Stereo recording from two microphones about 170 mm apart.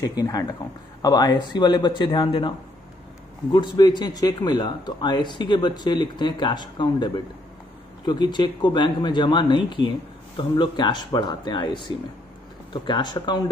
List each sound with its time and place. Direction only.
0.2 s speech: 20° left (ahead or behind)
3.5 s speech: 25° left (ahead or behind)